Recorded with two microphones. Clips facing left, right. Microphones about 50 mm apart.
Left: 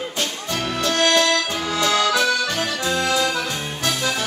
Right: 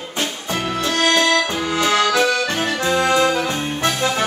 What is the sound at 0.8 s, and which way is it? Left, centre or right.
Accordion, centre.